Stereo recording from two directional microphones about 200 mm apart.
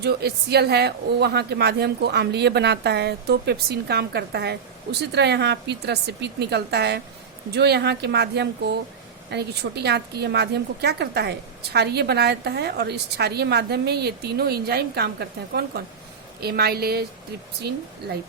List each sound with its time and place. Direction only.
0.0 s a woman's voice: 50° right (ahead or behind)